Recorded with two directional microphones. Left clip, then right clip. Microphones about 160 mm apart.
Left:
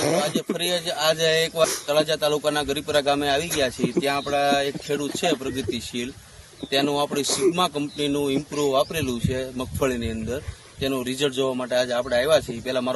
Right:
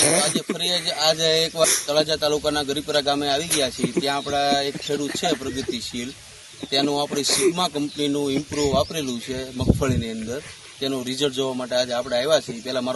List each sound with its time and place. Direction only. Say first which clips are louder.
0.0 s a sound: right 2 dB; 5° left (ahead or behind)
0.6 s speech: right 2 dB; 15° left (ahead or behind)
6.7 s speech: even; 15° left (ahead or behind)
7.3 s speech: right 4 dB; centre (ahead or behind)
7.5 s speech: even; 15° left (ahead or behind)
8.4 s speech: right 1 dB; centre (ahead or behind)
8.7 s speech: even; 15° left (ahead or behind)